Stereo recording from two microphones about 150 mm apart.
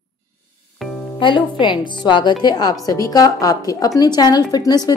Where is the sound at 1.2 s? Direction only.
30° left (ahead or behind).